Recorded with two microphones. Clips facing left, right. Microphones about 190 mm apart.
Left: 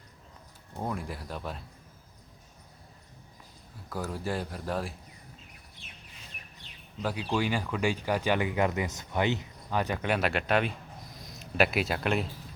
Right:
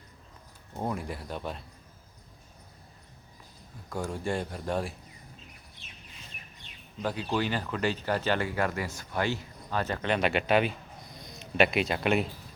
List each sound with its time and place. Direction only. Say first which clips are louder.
0.8 s speech: right 2 dB; centre (ahead or behind)
3.8 s speech: right 1 dB; 5° left (ahead or behind)
7.0 s speech: even; 10° left (ahead or behind)